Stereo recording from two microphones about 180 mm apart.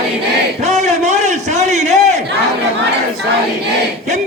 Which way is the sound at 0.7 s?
40° right (ahead or behind).